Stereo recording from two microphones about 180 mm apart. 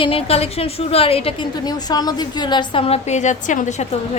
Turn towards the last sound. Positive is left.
turn(degrees=40)  # may be behind; listen again after turning